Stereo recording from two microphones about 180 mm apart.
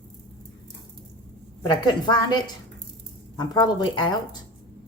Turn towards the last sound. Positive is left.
turn(degrees=25)  # may be behind; listen again after turning